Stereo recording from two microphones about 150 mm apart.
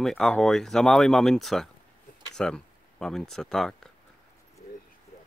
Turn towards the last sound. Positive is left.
turn(degrees=5)  # may be behind; listen again after turning